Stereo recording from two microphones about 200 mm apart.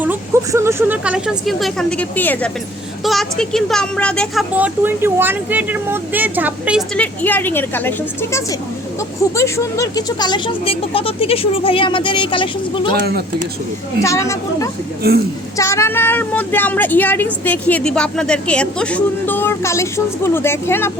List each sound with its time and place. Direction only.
0.0 s speech: 10° right (ahead or behind)
4.5 s speech: 10° right (ahead or behind)
6.9 s a woman's voice: 5° left (ahead or behind); by 12.9 s 25° left (ahead or behind)
14.0 s a woman's voice: 15° left (ahead or behind)